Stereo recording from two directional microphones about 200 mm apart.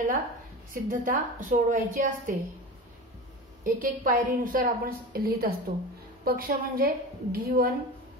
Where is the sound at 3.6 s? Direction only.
45° right (ahead or behind).